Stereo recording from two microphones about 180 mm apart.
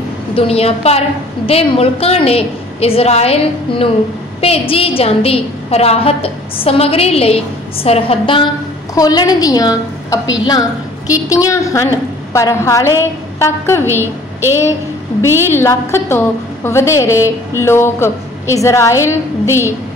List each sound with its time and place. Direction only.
0.3 s a woman's voice: 30° left (ahead or behind); by 13.8 s 15° left (ahead or behind)
15.2 s a woman's voice: 15° left (ahead or behind)